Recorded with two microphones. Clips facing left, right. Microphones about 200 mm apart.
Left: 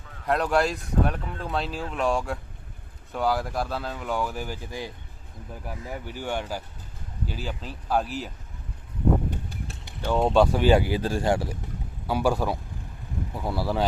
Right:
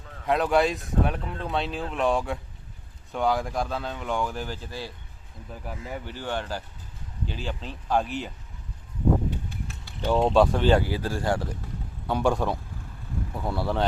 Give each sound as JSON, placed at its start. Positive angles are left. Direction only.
{"t": 0.3, "sound": "speech", "side_deg": 0}
{"t": 10.2, "sound": "speech", "side_deg": 0}
{"t": 10.6, "sound": "speech", "side_deg": 10}